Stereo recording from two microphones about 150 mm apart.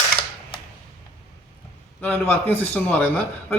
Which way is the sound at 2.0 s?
10° left (ahead or behind).